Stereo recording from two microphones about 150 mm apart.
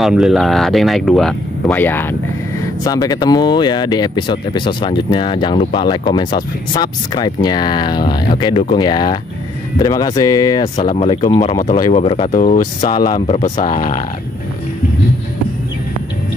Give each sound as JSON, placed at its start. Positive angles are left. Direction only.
{"t": 0.0, "sound": "speech", "side_deg": 0}
{"t": 1.7, "sound": "speech", "side_deg": 15}
{"t": 2.6, "sound": "speech", "side_deg": 25}
{"t": 11.9, "sound": "speech", "side_deg": 40}
{"t": 12.5, "sound": "speech", "side_deg": 55}